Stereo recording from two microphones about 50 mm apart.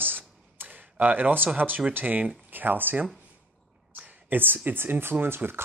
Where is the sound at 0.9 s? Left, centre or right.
Right.